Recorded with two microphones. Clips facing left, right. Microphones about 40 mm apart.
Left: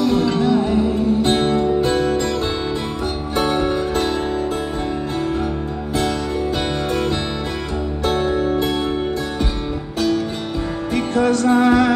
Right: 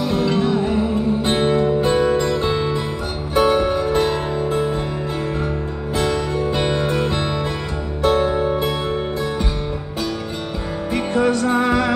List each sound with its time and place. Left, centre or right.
0.1 s music: centre
3.8 s music: centre
5.9 s music: centre
8.0 s music: centre
11.1 s music: centre